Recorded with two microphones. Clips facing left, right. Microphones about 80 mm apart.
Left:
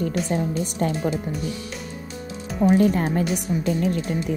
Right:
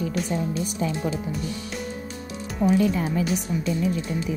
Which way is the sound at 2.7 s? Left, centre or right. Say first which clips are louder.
Left 3 dB; left.